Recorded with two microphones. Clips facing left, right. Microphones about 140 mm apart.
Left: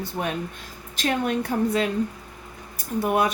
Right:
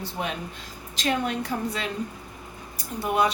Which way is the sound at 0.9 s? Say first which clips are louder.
Left 2 dB; 50° left (ahead or behind).